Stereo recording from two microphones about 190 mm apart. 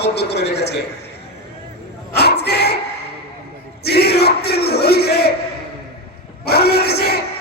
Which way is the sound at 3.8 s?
60° left (ahead or behind).